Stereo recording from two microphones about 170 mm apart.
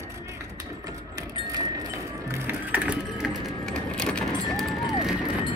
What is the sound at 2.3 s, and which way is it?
Music, 10° right (ahead or behind).